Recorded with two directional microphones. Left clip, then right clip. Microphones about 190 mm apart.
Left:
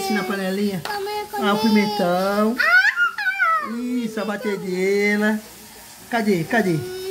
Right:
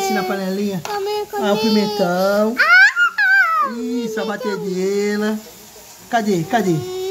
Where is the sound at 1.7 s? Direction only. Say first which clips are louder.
Right 2 dB; 15° right (ahead or behind).